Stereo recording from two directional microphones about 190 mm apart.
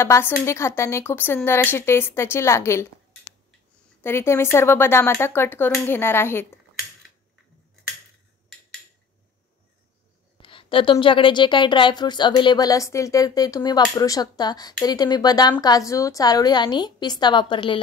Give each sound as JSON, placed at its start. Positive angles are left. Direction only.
{"t": 0.0, "sound": "a woman's voice", "side_deg": 15}
{"t": 4.0, "sound": "a woman's voice", "side_deg": 10}
{"t": 10.3, "sound": "a woman's voice", "side_deg": 25}